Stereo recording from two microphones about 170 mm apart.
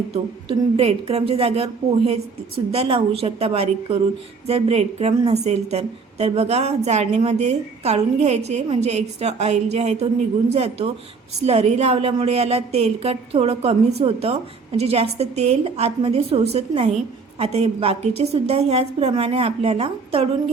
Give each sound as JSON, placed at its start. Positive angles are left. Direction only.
{"t": 0.1, "sound": "a woman's voice", "side_deg": -35}